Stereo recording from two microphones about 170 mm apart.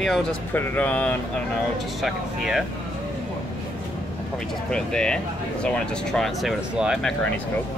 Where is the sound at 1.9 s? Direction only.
Centre (ahead or behind).